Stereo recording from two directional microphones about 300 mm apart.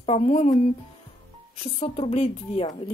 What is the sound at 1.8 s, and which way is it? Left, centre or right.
A woman's voice, centre.